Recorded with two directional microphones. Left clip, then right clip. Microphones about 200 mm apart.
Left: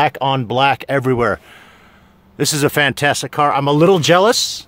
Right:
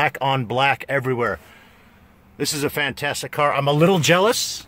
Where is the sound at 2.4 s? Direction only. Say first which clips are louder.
Left 7 dB; 45° left (ahead or behind).